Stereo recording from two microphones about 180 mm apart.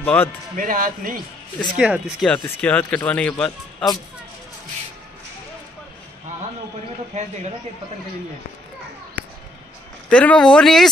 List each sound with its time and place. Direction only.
0.0 s speech: 10° left (ahead or behind)
0.6 s speech: 50° right (ahead or behind)
1.8 s speech: 5° right (ahead or behind)
2.3 s speech: 10° left (ahead or behind)
7.1 s speech: 35° right (ahead or behind)
10.0 s speech: 5° left (ahead or behind)